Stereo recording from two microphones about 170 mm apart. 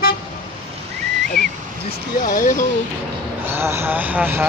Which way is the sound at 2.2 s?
50° left (ahead or behind).